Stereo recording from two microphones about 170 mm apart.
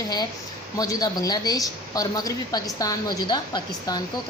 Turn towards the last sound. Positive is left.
turn(degrees=25)  # may be behind; listen again after turning